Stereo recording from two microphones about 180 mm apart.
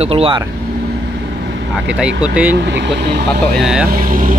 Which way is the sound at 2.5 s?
70° right (ahead or behind).